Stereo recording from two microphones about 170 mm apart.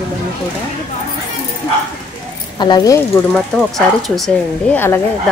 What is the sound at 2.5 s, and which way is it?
Speech, 25° left (ahead or behind).